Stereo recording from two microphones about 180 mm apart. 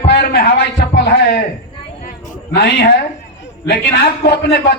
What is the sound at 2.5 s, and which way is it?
A man's voice, 70° left (ahead or behind).